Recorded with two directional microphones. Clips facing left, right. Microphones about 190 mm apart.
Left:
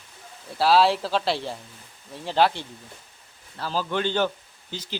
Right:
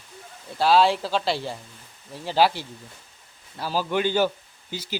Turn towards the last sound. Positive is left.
turn(degrees=-10)  # may be behind; listen again after turning